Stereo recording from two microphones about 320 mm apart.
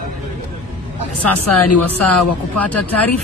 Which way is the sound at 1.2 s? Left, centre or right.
Left.